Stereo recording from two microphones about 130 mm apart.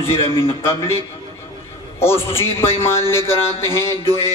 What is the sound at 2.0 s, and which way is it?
A man's voice, 20° left (ahead or behind).